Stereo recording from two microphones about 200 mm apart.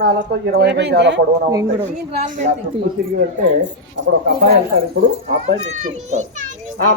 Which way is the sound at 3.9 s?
70° right (ahead or behind).